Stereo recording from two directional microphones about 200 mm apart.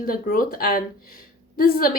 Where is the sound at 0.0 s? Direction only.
45° left (ahead or behind).